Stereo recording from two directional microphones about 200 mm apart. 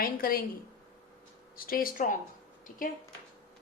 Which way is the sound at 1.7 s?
45° left (ahead or behind).